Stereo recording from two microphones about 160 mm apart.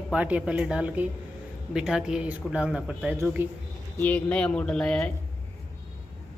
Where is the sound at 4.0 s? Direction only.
10° left (ahead or behind).